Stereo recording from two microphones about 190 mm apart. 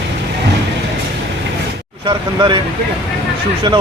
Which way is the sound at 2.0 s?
25° right (ahead or behind).